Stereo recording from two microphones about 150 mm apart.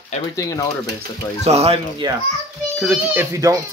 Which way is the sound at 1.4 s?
45° right (ahead or behind).